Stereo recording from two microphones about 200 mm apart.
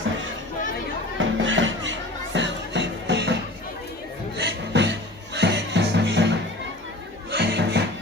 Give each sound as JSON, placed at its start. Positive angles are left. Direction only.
{"t": 1.2, "sound": "music", "side_deg": -70}
{"t": 4.4, "sound": "music", "side_deg": -55}